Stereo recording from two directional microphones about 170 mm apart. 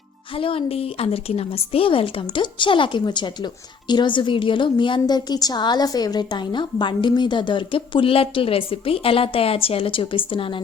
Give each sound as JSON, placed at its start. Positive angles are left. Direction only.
{"t": 0.3, "sound": "a woman's voice", "side_deg": 30}